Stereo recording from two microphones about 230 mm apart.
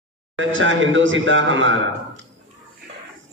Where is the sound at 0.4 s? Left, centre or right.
Right.